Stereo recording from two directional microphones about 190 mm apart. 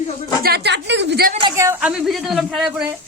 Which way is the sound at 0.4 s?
60° right (ahead or behind).